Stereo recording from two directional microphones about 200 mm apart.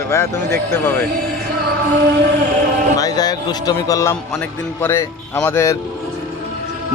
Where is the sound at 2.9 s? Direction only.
20° left (ahead or behind).